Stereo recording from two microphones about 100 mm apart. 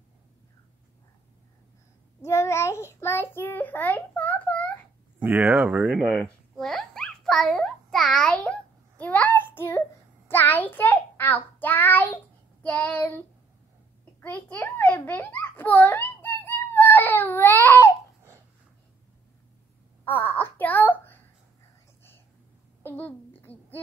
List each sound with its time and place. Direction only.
2.2 s a child's voice: 25° left (ahead or behind)
5.2 s speech: 20° right (ahead or behind)
6.5 s babbling: 5° left (ahead or behind)
12.6 s child singing: 15° left (ahead or behind)
14.2 s a child's voice: 15° left (ahead or behind)
20.1 s a sound: 20° left (ahead or behind)
22.8 s babbling: 20° left (ahead or behind)